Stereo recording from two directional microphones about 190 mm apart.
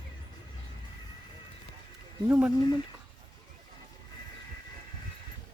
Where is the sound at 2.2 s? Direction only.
5° right (ahead or behind).